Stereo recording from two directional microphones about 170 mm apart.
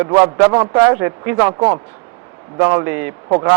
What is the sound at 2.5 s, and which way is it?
A man's voice, 15° right (ahead or behind).